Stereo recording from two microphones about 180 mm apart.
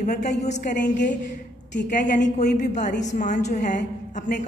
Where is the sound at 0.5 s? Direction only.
45° left (ahead or behind).